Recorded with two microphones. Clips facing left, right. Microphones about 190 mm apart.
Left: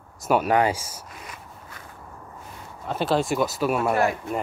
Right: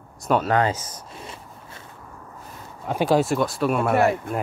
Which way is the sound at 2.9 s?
10° right (ahead or behind).